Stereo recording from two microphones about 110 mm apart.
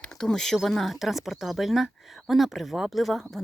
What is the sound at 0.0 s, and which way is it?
Speech, 5° left (ahead or behind).